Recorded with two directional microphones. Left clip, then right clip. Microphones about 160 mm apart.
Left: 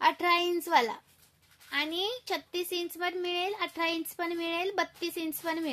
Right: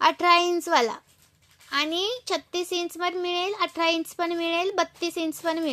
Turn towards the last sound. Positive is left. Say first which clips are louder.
# right 6 dB
turn(degrees=-5)  # may be behind; listen again after turning